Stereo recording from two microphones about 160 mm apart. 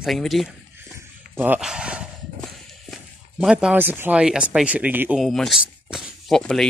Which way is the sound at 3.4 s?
5° right (ahead or behind).